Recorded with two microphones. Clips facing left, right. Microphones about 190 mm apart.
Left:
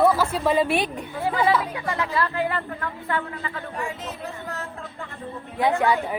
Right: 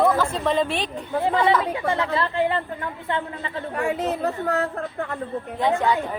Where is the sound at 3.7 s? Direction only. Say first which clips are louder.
Right 12 dB; 60° right (ahead or behind).